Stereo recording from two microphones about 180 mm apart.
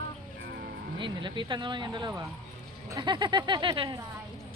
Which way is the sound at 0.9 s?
25° right (ahead or behind).